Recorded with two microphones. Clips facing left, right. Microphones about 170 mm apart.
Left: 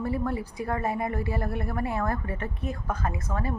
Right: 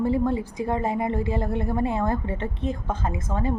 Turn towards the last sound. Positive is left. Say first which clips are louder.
# right 4 dB
turn(degrees=-20)  # may be behind; listen again after turning